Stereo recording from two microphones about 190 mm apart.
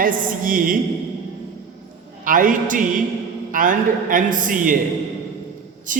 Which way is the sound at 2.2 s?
45° right (ahead or behind).